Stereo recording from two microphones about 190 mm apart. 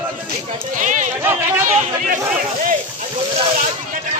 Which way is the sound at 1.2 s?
10° right (ahead or behind).